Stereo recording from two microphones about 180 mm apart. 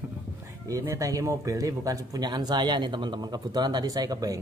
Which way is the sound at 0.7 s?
20° right (ahead or behind).